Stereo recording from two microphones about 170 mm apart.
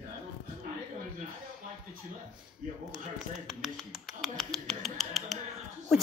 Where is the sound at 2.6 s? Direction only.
50° right (ahead or behind).